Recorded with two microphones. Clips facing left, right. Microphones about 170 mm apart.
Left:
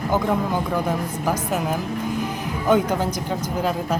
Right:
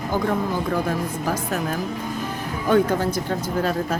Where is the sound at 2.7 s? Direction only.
15° left (ahead or behind).